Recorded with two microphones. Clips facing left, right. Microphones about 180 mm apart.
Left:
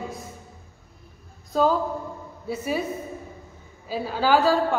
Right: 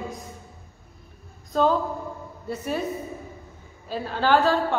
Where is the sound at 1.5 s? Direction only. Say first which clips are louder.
Even; 5° left (ahead or behind).